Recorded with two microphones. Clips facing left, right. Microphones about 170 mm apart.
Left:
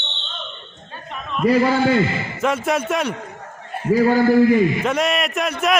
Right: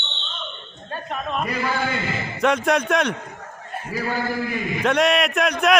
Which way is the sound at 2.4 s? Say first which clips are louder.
Right 1 dB; centre (ahead or behind).